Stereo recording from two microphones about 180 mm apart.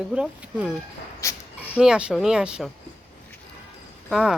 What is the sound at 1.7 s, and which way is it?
Speech, 5° right (ahead or behind).